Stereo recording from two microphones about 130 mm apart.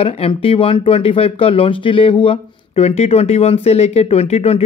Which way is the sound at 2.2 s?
55° left (ahead or behind).